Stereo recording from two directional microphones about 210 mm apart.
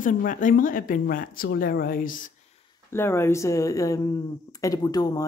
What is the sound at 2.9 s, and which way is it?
Speech, 10° left (ahead or behind).